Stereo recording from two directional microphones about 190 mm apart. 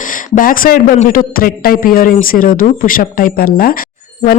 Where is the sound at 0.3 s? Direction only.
45° left (ahead or behind).